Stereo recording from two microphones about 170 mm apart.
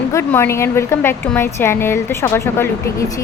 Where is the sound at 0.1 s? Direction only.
15° left (ahead or behind).